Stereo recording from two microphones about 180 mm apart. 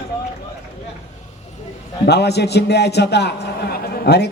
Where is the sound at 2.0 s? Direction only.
65° left (ahead or behind).